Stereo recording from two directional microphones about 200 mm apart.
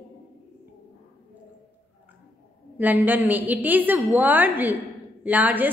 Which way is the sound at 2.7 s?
10° right (ahead or behind).